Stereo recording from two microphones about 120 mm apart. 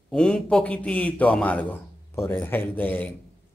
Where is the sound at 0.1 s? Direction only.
5° left (ahead or behind).